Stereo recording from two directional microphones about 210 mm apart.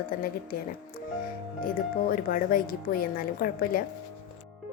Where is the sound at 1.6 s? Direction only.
40° left (ahead or behind).